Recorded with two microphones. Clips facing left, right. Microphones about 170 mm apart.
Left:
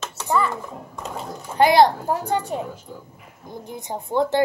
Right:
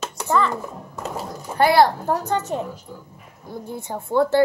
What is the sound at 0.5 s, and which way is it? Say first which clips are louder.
Speech: right 2 dB; 10° right (ahead or behind).